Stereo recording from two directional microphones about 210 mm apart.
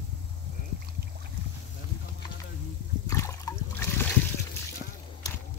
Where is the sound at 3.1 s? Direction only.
15° left (ahead or behind).